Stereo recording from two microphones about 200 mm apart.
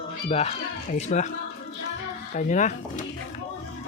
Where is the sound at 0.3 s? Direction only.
30° left (ahead or behind).